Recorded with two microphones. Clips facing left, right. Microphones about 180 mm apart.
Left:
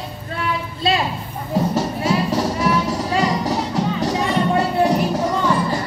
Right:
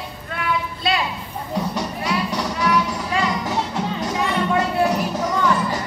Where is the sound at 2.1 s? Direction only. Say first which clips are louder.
Left 5 dB; 30° left (ahead or behind).